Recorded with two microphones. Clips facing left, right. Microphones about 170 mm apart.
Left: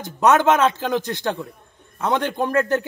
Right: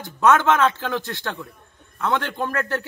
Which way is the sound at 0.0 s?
20° left (ahead or behind).